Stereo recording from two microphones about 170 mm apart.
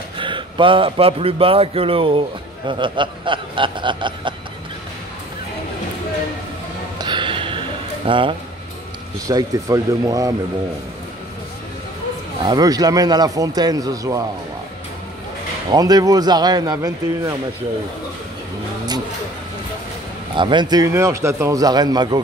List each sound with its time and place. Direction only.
0.2 s a man's voice: 30° right (ahead or behind)
7.0 s music: 25° right (ahead or behind)
9.3 s speech: 20° right (ahead or behind)
12.4 s speech: 20° right (ahead or behind)
15.7 s speech: 20° right (ahead or behind)
20.3 s speech: 30° right (ahead or behind)